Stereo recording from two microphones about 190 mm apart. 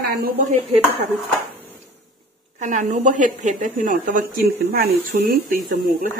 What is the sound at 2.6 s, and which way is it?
Speech, 40° right (ahead or behind).